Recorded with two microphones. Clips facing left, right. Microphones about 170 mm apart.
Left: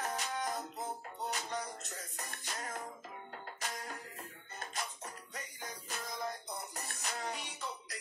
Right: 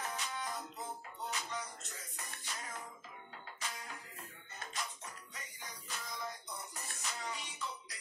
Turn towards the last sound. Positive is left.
turn(degrees=60)  # may be behind; listen again after turning